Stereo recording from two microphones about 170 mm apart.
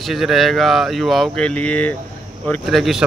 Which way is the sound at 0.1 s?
Centre (ahead or behind).